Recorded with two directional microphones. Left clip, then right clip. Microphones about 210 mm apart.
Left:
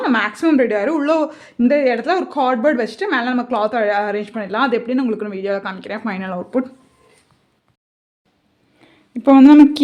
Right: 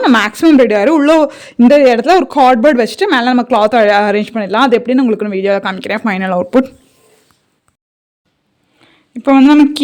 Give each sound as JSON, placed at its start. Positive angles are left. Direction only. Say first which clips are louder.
{"t": 0.0, "sound": "speech", "louder": "right 7 dB", "side_deg": -50}
{"t": 8.8, "sound": "a woman's voice", "louder": "right 2 dB", "side_deg": 5}